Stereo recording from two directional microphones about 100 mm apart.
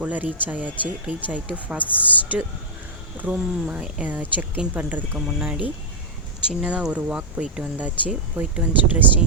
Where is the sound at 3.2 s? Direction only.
10° right (ahead or behind).